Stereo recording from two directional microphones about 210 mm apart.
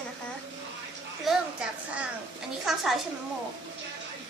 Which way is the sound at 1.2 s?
5° right (ahead or behind).